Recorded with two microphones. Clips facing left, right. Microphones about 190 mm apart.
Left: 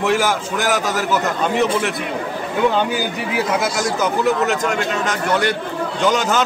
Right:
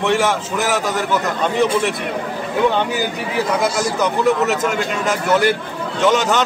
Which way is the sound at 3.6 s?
Centre (ahead or behind).